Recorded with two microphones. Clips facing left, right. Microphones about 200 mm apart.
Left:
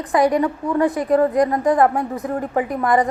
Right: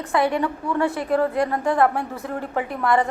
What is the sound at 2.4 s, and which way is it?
Speech, 40° left (ahead or behind).